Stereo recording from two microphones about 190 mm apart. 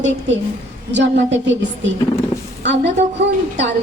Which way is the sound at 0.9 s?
70° right (ahead or behind).